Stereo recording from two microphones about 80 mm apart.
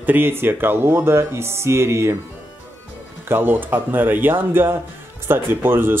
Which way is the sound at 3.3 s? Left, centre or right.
Right.